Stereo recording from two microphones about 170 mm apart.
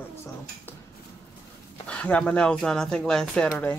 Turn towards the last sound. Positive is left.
turn(degrees=5)  # may be behind; listen again after turning